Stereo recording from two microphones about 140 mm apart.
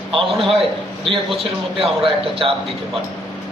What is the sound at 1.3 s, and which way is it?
A man's voice, 40° right (ahead or behind).